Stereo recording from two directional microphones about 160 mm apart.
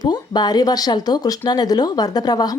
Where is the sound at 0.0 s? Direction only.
25° left (ahead or behind).